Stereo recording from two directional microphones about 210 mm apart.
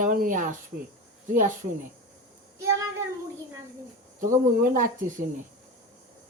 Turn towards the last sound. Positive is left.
turn(degrees=-40)  # may be behind; listen again after turning